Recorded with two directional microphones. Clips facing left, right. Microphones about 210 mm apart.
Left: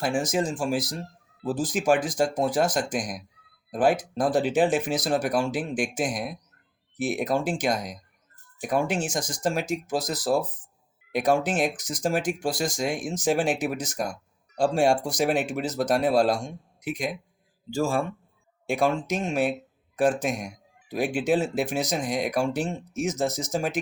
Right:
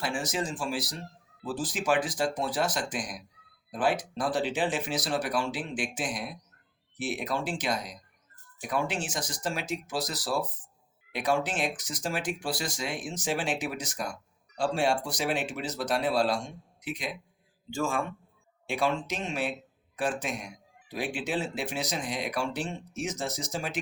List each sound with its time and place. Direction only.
0.0 s a man's voice: 45° left (ahead or behind)